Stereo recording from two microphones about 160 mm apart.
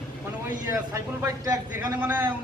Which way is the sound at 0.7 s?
20° right (ahead or behind).